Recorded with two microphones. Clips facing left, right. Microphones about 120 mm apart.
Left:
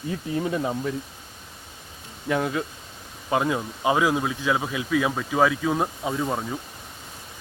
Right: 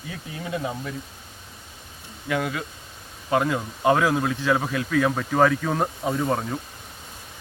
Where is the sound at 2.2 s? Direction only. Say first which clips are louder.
Left 2 dB; 25° left (ahead or behind).